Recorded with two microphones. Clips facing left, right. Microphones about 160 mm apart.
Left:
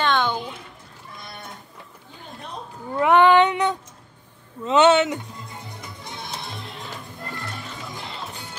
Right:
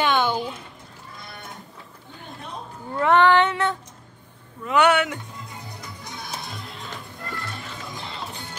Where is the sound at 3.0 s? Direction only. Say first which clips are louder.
Left 2 dB; 15° left (ahead or behind).